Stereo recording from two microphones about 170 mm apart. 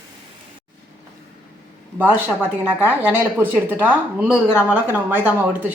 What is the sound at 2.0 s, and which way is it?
A woman's voice, 10° right (ahead or behind).